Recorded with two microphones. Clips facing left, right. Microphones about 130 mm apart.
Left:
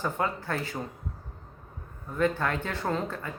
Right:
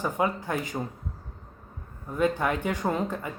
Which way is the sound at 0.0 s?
15° right (ahead or behind).